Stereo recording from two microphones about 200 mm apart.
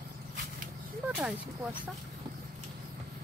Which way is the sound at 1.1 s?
5° right (ahead or behind).